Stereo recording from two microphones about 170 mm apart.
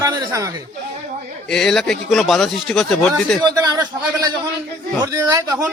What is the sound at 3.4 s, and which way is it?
Speech, 25° right (ahead or behind).